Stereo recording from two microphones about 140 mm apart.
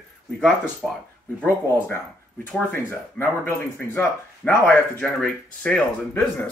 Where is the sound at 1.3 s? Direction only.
15° left (ahead or behind).